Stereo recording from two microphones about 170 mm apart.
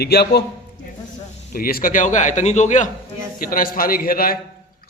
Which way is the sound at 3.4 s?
55° left (ahead or behind).